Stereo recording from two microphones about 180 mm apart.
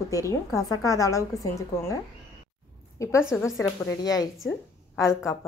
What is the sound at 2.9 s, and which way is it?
A woman's voice, 15° left (ahead or behind).